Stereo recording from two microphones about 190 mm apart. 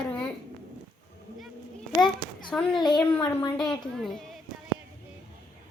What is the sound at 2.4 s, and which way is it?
Speech, 5° left (ahead or behind).